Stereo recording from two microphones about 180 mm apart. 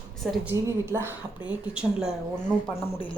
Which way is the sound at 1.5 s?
5° right (ahead or behind).